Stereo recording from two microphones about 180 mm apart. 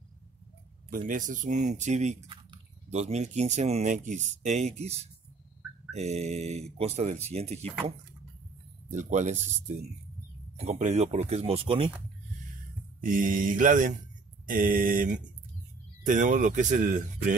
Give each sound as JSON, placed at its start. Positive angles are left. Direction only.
{"t": 0.8, "sound": "speech", "side_deg": -50}
{"t": 8.9, "sound": "speech", "side_deg": -40}
{"t": 13.0, "sound": "mantra", "side_deg": -50}